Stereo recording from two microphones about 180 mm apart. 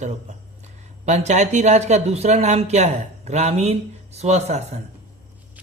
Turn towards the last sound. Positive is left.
turn(degrees=-40)  # may be behind; listen again after turning